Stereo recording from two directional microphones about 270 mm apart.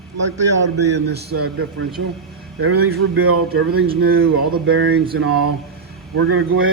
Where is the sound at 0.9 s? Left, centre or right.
Right.